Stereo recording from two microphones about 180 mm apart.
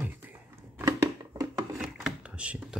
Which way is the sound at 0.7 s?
15° right (ahead or behind).